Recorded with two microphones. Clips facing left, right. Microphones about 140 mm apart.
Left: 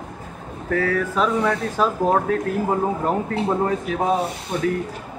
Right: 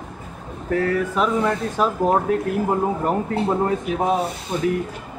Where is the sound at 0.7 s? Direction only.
5° right (ahead or behind).